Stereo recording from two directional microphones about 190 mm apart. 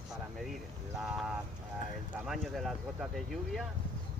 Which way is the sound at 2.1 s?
Centre (ahead or behind).